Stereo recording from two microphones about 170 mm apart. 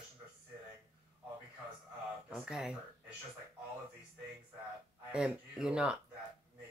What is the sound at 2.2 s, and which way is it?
Speech, 5° right (ahead or behind).